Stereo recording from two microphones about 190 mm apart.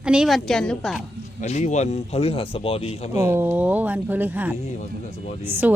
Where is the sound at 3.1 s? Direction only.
10° right (ahead or behind).